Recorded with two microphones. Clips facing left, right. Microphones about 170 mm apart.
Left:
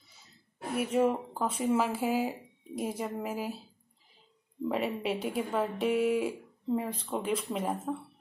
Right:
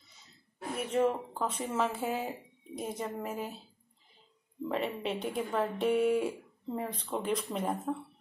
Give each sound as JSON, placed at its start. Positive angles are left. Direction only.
{"t": 0.7, "sound": "speech", "side_deg": 10}